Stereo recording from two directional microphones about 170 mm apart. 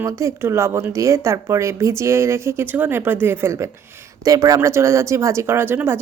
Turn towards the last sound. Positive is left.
turn(degrees=-15)  # may be behind; listen again after turning